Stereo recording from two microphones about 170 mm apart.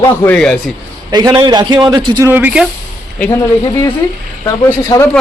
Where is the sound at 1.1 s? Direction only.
25° right (ahead or behind).